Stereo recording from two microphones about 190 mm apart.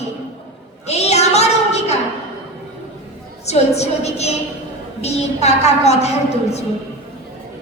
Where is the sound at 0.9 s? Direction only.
35° left (ahead or behind).